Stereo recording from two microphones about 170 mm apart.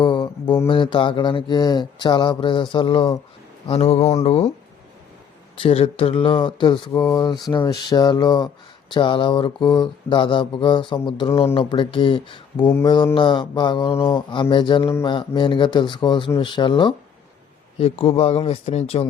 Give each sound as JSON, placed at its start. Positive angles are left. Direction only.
{"t": 0.0, "sound": "mantra", "side_deg": 25}
{"t": 3.7, "sound": "speech", "side_deg": 35}
{"t": 5.5, "sound": "speech", "side_deg": 35}
{"t": 6.9, "sound": "speech", "side_deg": 15}
{"t": 7.5, "sound": "mantra", "side_deg": 25}
{"t": 17.7, "sound": "speech", "side_deg": 35}